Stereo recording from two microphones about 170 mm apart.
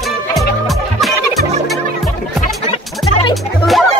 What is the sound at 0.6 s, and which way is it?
Music, centre (ahead or behind).